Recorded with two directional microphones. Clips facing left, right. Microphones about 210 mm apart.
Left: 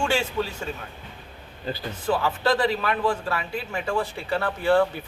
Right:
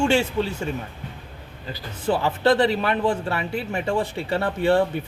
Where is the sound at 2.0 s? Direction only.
25° right (ahead or behind).